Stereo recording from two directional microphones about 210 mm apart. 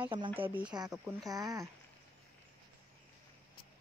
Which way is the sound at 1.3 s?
15° right (ahead or behind).